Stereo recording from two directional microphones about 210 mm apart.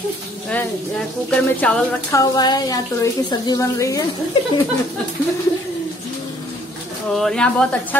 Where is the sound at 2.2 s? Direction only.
20° left (ahead or behind).